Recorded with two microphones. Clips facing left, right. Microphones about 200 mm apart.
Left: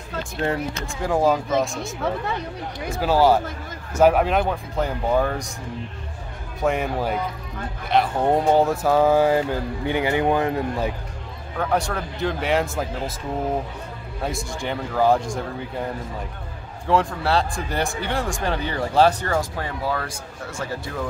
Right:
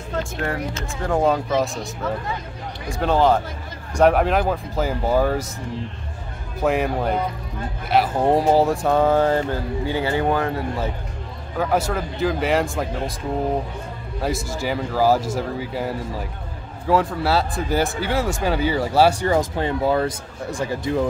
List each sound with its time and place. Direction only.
0.4 s speech: 25° left (ahead or behind)
1.0 s speech: centre (ahead or behind)
2.9 s speech: 5° left (ahead or behind)
6.6 s speech: centre (ahead or behind); by 10.9 s 20° left (ahead or behind)
11.5 s speech: 5° right (ahead or behind)
14.2 s speech: centre (ahead or behind)